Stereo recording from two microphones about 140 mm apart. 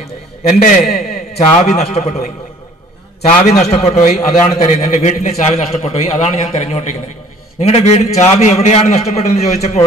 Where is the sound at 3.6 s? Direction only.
45° left (ahead or behind).